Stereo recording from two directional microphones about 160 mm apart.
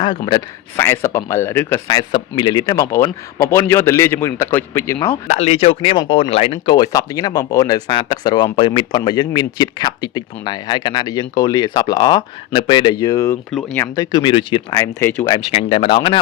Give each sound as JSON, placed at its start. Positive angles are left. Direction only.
{"t": 0.3, "sound": "speech", "side_deg": 20}
{"t": 1.9, "sound": "speech", "side_deg": 30}
{"t": 5.3, "sound": "speech", "side_deg": 40}
{"t": 6.7, "sound": "speech", "side_deg": 20}
{"t": 13.5, "sound": "speech", "side_deg": 0}
{"t": 13.7, "sound": "speech", "side_deg": 20}
{"t": 15.4, "sound": "speech", "side_deg": 35}